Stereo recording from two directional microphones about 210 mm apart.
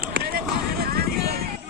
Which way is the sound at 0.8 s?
50° right (ahead or behind).